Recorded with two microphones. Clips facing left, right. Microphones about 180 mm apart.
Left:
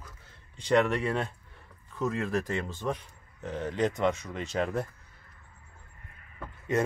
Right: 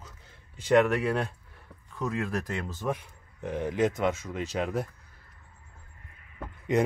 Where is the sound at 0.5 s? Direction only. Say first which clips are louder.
Right 3 dB; 5° right (ahead or behind).